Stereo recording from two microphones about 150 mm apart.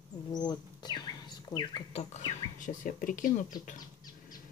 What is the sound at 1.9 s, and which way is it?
Speech, 55° left (ahead or behind).